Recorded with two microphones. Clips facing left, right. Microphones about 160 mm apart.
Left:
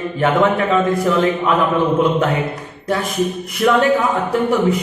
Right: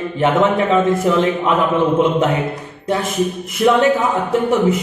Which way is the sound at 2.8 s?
25° right (ahead or behind).